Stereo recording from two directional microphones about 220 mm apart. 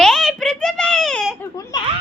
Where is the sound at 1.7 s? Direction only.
15° left (ahead or behind).